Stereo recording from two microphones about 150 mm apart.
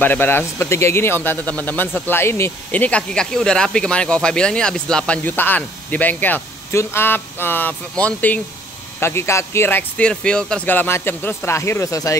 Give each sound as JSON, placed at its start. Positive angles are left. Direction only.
{"t": 0.0, "sound": "speech", "side_deg": 15}